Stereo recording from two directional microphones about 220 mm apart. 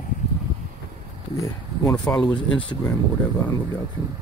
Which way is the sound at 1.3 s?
15° left (ahead or behind).